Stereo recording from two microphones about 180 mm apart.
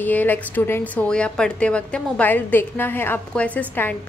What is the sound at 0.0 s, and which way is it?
A woman's voice, 10° left (ahead or behind).